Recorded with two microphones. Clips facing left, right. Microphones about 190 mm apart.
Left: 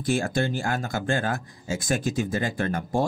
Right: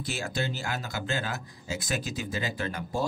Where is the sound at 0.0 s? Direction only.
50° left (ahead or behind).